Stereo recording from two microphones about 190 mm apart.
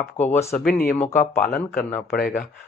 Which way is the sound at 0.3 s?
15° left (ahead or behind).